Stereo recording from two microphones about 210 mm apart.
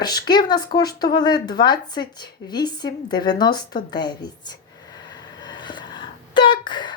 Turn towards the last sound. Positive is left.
turn(degrees=20)  # may be behind; listen again after turning